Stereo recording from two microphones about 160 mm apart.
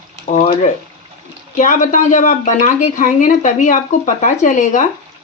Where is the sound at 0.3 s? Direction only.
45° left (ahead or behind).